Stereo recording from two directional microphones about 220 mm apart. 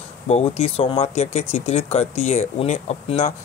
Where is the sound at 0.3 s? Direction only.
25° left (ahead or behind).